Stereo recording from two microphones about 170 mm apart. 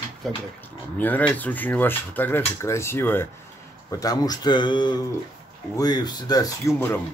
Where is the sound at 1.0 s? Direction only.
10° left (ahead or behind).